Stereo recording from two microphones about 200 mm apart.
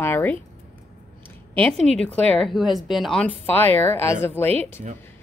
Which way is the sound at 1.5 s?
5° left (ahead or behind).